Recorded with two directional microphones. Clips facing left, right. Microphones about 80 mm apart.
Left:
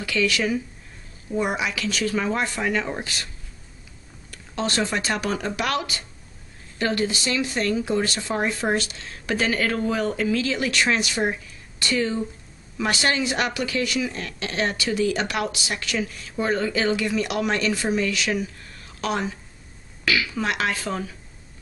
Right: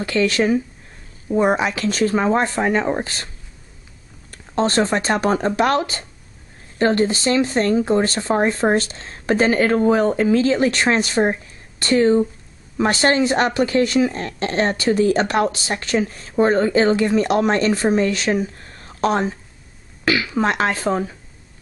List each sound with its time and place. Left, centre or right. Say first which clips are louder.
0.0 s speech: right 5 dB; right
4.3 s speech: right 7 dB; right